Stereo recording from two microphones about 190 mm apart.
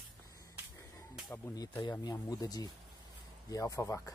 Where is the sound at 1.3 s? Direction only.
20° left (ahead or behind).